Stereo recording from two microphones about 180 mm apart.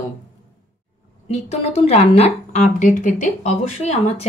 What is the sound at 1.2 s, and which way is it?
A woman's voice, 35° left (ahead or behind).